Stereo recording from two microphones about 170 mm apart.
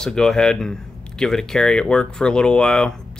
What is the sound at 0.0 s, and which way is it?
Speech, 5° left (ahead or behind).